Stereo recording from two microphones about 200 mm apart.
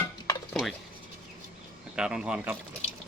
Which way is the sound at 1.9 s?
5° right (ahead or behind).